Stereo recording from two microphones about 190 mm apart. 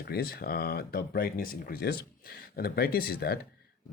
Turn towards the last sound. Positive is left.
turn(degrees=55)  # may be behind; listen again after turning